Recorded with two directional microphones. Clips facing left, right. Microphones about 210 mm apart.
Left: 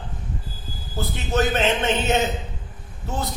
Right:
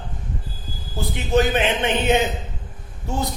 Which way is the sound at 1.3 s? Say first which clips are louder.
Right 2 dB; 15° right (ahead or behind).